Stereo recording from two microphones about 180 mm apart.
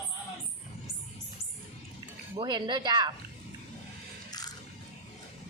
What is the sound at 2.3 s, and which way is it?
Speech, 25° right (ahead or behind).